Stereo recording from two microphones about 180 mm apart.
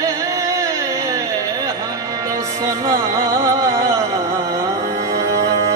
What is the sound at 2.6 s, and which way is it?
Music, 20° right (ahead or behind).